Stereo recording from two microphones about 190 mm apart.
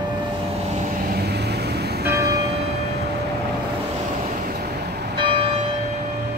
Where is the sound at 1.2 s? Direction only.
60° right (ahead or behind).